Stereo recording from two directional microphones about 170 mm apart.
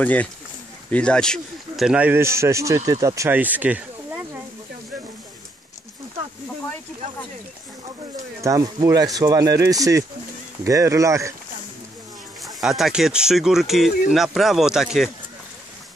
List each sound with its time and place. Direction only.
0.0 s a man's voice: 10° left (ahead or behind); by 4.4 s 10° right (ahead or behind)
8.4 s a man's voice: 20° right (ahead or behind)
12.5 s speech: centre (ahead or behind)